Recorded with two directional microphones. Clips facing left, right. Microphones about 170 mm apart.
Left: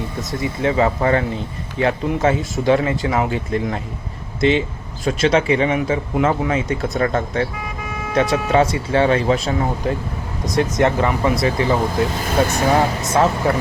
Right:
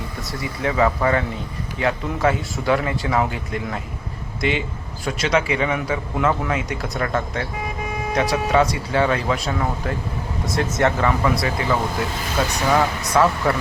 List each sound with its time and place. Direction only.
0.3 s speech: 25° left (ahead or behind)
12.5 s speech: 50° left (ahead or behind)
12.7 s speech: 25° left (ahead or behind)